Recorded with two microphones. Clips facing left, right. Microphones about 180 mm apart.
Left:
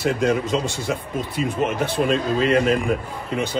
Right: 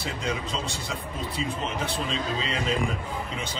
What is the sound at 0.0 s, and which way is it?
Speech, 60° left (ahead or behind).